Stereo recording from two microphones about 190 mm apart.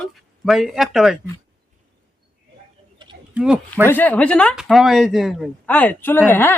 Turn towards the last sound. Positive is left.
turn(degrees=10)  # may be behind; listen again after turning